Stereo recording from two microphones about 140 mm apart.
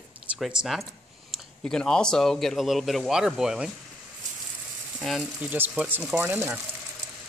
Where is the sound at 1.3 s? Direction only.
5° left (ahead or behind).